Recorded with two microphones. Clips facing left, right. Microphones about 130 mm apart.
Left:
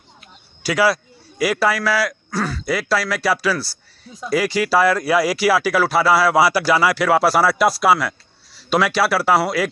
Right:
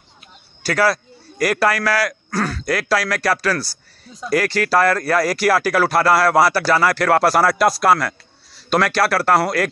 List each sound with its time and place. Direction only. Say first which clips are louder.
0.7 s speech: even; 10° left (ahead or behind)